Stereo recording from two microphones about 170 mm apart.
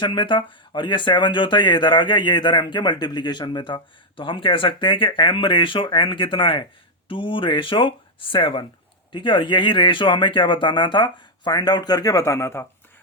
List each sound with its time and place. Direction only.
0.0 s speech: 30° left (ahead or behind)